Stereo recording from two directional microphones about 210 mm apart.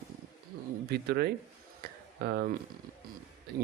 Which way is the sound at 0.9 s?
50° right (ahead or behind).